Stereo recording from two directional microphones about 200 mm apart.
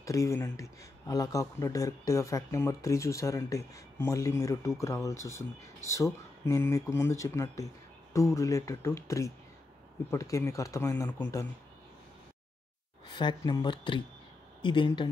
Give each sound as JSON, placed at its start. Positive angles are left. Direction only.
{"t": 0.0, "sound": "speech", "side_deg": 15}
{"t": 13.1, "sound": "speech", "side_deg": 25}